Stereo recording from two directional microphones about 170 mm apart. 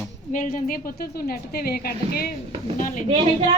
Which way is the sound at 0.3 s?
55° left (ahead or behind).